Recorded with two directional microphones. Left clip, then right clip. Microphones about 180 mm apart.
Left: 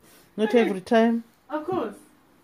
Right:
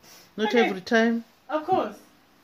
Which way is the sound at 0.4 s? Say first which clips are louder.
Left 1 dB; 15° left (ahead or behind).